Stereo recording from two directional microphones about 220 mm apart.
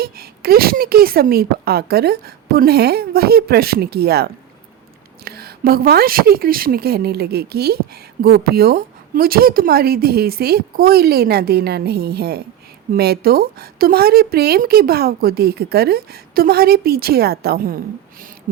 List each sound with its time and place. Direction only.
0.0 s a woman's voice: 45° right (ahead or behind)